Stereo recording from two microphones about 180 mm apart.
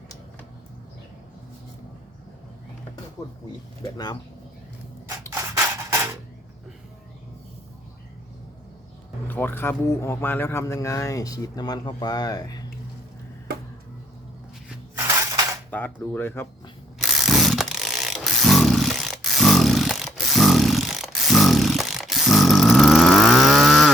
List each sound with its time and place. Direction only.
3.8 s speech: 25° left (ahead or behind)
9.2 s a man's voice: 10° left (ahead or behind)
14.9 s a sound: 15° right (ahead or behind)
15.7 s a man's voice: 10° left (ahead or behind)
17.0 s mechanisms: centre (ahead or behind)